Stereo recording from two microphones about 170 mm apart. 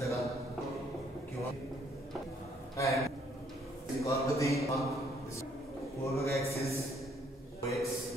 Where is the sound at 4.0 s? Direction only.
20° left (ahead or behind).